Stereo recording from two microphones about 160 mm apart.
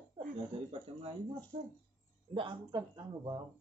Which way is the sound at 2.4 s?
30° right (ahead or behind).